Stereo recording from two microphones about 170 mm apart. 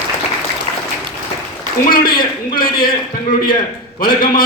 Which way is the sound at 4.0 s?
60° left (ahead or behind).